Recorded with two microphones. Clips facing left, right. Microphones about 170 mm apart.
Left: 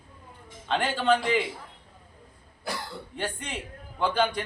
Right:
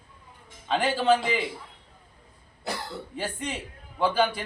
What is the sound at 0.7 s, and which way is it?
Speech, 5° right (ahead or behind).